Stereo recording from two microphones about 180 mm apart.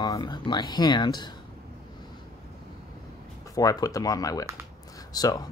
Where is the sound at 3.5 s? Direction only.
20° left (ahead or behind).